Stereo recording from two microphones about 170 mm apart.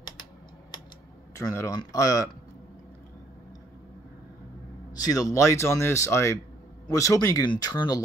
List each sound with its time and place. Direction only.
1.3 s speech: 15° left (ahead or behind)
4.9 s speech: 20° left (ahead or behind)